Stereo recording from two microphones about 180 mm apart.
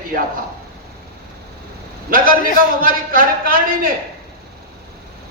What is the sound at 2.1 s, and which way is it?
A man's voice, 50° right (ahead or behind).